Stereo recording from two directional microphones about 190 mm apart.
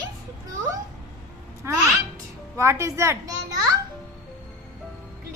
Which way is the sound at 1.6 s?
15° right (ahead or behind).